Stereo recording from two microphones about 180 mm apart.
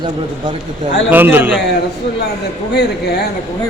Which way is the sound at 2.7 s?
65° left (ahead or behind).